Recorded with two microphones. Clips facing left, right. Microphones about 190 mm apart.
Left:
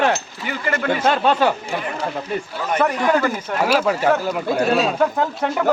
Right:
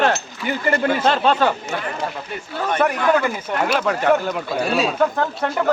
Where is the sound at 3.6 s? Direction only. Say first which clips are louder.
Left 2 dB; 5° left (ahead or behind).